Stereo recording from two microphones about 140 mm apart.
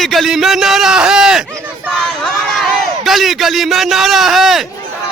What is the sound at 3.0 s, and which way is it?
Speech, centre (ahead or behind).